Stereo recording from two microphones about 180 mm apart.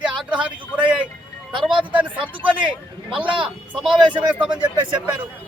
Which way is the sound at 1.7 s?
25° right (ahead or behind).